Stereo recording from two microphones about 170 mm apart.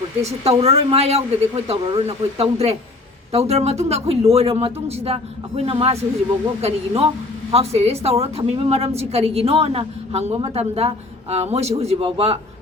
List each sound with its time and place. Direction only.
0.3 s a woman's voice: 40° right (ahead or behind)